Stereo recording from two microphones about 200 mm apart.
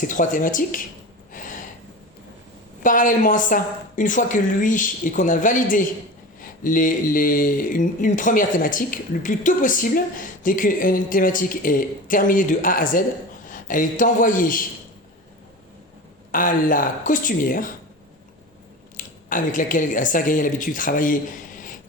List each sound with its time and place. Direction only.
0.0 s a woman's voice: 40° left (ahead or behind)
1.3 s a sound: 40° left (ahead or behind)
2.8 s a woman's voice: 40° left (ahead or behind)
16.3 s speech: 40° left (ahead or behind)
18.9 s speech: 40° left (ahead or behind)